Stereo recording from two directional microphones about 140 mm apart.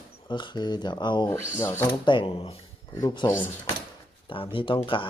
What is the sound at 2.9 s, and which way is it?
Speech, 30° left (ahead or behind).